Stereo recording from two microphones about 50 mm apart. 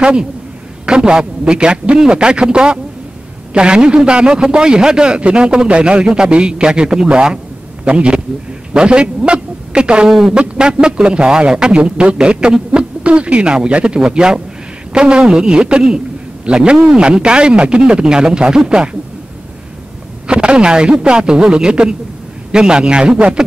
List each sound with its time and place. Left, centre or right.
0.0 s a man's voice: centre
10.0 s a man's voice: centre
10.3 s a man's voice: right
20.2 s a man's voice: centre